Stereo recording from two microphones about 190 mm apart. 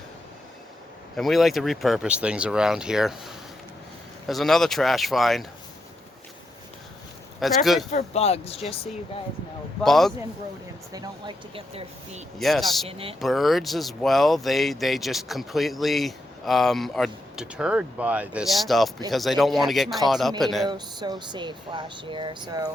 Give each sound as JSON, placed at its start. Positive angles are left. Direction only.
{"t": 1.1, "sound": "speech", "side_deg": 0}
{"t": 7.3, "sound": "speech", "side_deg": 0}
{"t": 7.9, "sound": "speech", "side_deg": 35}
{"t": 9.8, "sound": "speech", "side_deg": 0}
{"t": 10.9, "sound": "speech", "side_deg": -25}
{"t": 12.4, "sound": "speech", "side_deg": 0}
{"t": 12.9, "sound": "speech", "side_deg": -30}
{"t": 13.1, "sound": "speech", "side_deg": 0}
{"t": 20.7, "sound": "speech", "side_deg": -20}